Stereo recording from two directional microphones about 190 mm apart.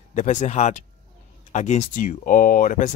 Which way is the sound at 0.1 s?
40° left (ahead or behind).